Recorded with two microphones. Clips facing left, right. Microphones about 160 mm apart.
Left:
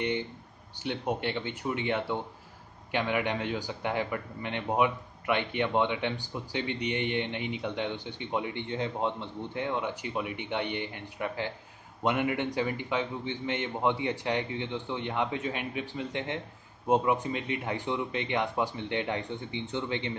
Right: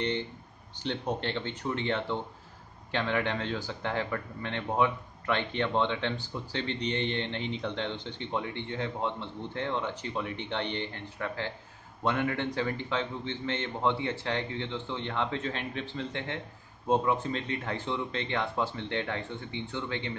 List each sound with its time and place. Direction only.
0.8 s a man's voice: 10° left (ahead or behind)